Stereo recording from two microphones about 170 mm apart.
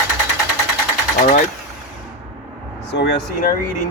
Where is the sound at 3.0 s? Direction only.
75° left (ahead or behind).